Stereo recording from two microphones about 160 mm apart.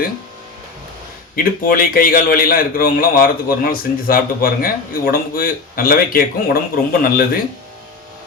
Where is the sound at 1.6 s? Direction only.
65° left (ahead or behind).